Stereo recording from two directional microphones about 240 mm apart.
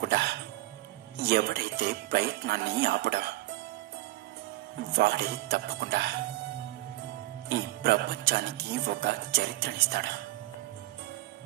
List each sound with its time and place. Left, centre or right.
0.0 s music: right
1.2 s speech: right
4.9 s speech: right
7.4 s speech: right